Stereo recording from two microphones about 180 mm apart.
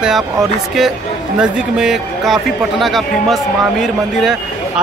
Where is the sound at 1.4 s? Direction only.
5° right (ahead or behind).